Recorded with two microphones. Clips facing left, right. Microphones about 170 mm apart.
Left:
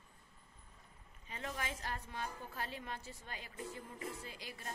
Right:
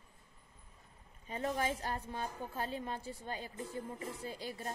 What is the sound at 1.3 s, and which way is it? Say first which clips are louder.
A woman's voice: right 8 dB; 35° right (ahead or behind).